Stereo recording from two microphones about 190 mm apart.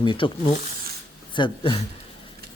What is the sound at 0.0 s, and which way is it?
Speech, 25° left (ahead or behind).